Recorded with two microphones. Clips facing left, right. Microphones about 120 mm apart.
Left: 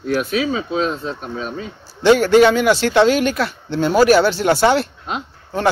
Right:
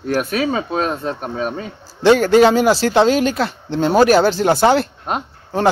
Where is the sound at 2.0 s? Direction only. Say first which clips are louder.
Even; 35° right (ahead or behind).